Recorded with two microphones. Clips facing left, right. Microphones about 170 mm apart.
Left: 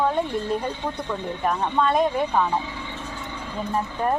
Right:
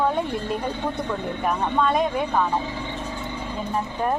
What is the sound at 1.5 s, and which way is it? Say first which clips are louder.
Speech: even; centre (ahead or behind).